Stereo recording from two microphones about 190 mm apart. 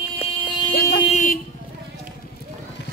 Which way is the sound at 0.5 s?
20° left (ahead or behind).